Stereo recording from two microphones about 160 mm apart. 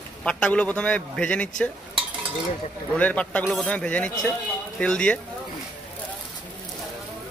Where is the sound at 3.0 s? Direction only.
10° left (ahead or behind).